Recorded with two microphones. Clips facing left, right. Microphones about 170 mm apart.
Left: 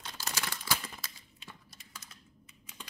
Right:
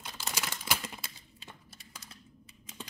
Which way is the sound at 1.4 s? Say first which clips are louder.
Even; 35° right (ahead or behind).